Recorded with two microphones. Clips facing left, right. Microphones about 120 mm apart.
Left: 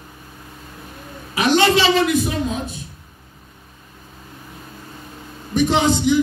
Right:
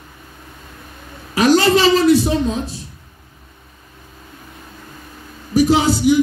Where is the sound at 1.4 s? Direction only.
40° right (ahead or behind).